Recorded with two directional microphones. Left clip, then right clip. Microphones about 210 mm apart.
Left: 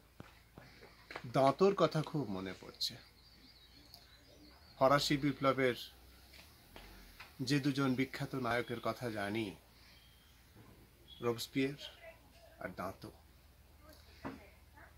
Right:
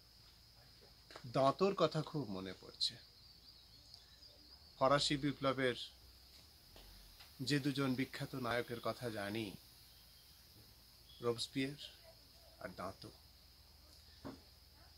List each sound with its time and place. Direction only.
1.3 s speech: 5° right (ahead or behind)
4.7 s speech: centre (ahead or behind)
7.4 s speech: 5° right (ahead or behind)
11.1 s speech: 5° right (ahead or behind)
14.2 s speech: 50° right (ahead or behind)